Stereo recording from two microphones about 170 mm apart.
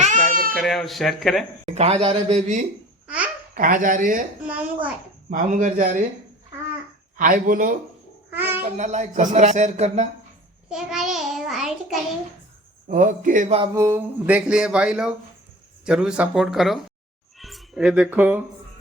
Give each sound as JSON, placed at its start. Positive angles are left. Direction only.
{"t": 0.0, "sound": "cat", "side_deg": -50}
{"t": 0.5, "sound": "speech", "side_deg": 0}
{"t": 1.6, "sound": "speech", "side_deg": -35}
{"t": 3.5, "sound": "speech", "side_deg": -55}
{"t": 4.4, "sound": "a child's voice", "side_deg": -10}
{"t": 5.3, "sound": "speech", "side_deg": -50}
{"t": 7.2, "sound": "speech", "side_deg": -55}
{"t": 8.3, "sound": "babbling", "side_deg": -10}
{"t": 8.6, "sound": "speech", "side_deg": -40}
{"t": 10.7, "sound": "speech", "side_deg": -5}
{"t": 12.9, "sound": "speech", "side_deg": -50}
{"t": 13.7, "sound": "speech", "side_deg": -15}